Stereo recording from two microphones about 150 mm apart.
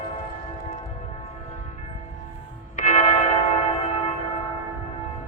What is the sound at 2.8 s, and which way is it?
Church bell, 55° left (ahead or behind).